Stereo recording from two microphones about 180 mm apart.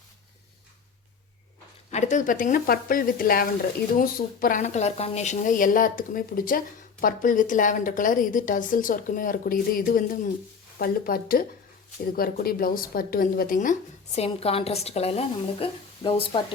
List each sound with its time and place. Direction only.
1.9 s a woman's voice: 40° left (ahead or behind)
14.2 s a woman's voice: 35° left (ahead or behind)